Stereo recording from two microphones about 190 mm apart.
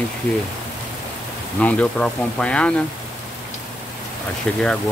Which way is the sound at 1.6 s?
5° left (ahead or behind).